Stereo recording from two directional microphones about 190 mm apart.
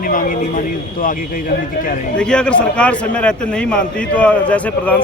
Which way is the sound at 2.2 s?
5° left (ahead or behind).